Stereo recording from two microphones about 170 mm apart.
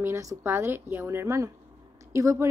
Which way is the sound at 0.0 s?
20° right (ahead or behind).